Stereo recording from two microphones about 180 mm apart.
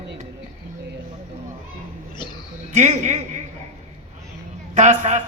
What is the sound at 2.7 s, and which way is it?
Speech, 40° right (ahead or behind).